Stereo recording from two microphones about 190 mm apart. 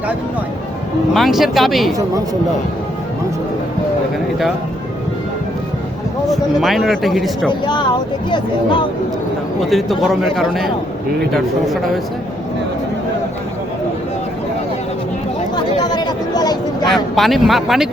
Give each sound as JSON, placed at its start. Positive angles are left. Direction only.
{"t": 1.1, "sound": "a man's voice", "side_deg": 0}
{"t": 6.2, "sound": "a man's voice", "side_deg": 0}
{"t": 8.3, "sound": "speech", "side_deg": 25}
{"t": 9.6, "sound": "a man's voice", "side_deg": 0}
{"t": 15.5, "sound": "chatter", "side_deg": 20}
{"t": 16.9, "sound": "a man's voice", "side_deg": 0}